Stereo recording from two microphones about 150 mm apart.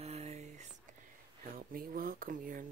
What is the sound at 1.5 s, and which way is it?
Speech, 70° right (ahead or behind).